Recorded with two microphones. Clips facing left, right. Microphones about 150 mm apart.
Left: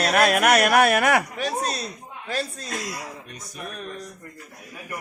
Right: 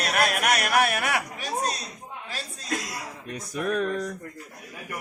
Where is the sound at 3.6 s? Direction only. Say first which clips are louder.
Right 10 dB; 70° right (ahead or behind).